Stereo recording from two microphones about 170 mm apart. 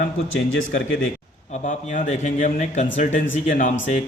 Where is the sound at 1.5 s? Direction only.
45° left (ahead or behind).